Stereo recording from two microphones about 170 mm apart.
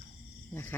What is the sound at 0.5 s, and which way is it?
Speech, 10° left (ahead or behind).